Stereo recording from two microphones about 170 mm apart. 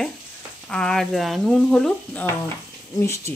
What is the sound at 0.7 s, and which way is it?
Speech, 5° left (ahead or behind).